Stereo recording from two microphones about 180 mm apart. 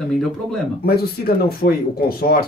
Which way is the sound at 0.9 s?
60° left (ahead or behind).